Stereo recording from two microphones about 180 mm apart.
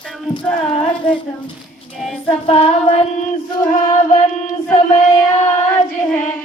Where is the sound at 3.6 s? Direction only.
45° left (ahead or behind).